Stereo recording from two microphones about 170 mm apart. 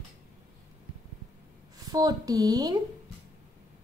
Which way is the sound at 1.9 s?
20° right (ahead or behind).